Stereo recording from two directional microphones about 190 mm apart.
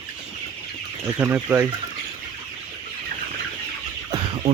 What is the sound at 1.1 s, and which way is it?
Speech, 10° right (ahead or behind).